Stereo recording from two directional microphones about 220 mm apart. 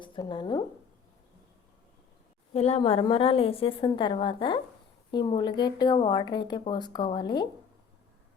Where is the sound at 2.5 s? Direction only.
30° left (ahead or behind).